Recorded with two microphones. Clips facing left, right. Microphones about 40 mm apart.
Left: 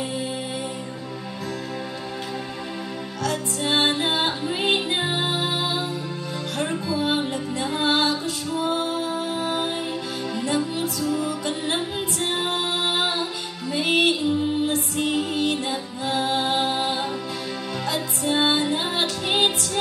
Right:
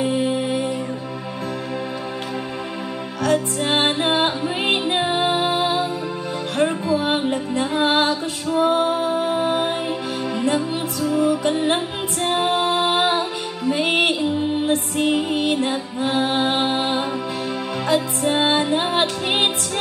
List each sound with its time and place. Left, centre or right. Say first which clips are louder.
0.0 s music: right 8 dB; right
3.2 s music: right 7 dB; right
6.9 s music: right 4 dB; right
7.2 s music: right 4 dB; right